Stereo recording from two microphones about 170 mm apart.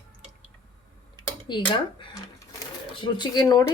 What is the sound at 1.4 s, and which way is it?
Speech, 25° left (ahead or behind).